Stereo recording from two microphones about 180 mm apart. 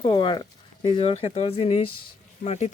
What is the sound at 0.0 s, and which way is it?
Speech, 25° left (ahead or behind).